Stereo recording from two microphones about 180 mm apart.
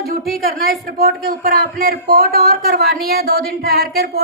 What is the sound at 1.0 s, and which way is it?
A woman's voice, 55° right (ahead or behind).